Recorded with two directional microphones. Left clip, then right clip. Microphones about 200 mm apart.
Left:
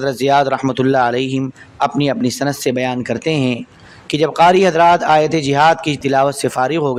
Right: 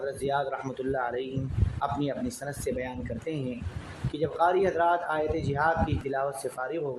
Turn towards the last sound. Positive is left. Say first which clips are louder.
# left 16 dB
turn(degrees=50)  # may be behind; listen again after turning